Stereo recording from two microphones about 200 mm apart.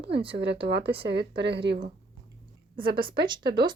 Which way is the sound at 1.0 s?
55° right (ahead or behind).